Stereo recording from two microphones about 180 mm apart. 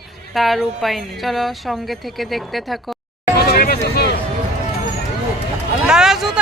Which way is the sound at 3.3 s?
60° left (ahead or behind).